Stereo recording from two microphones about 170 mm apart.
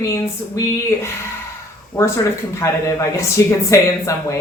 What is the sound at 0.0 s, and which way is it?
Speech, 20° left (ahead or behind).